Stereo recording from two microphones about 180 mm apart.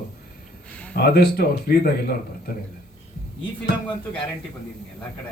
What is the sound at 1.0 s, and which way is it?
Speech, 65° left (ahead or behind).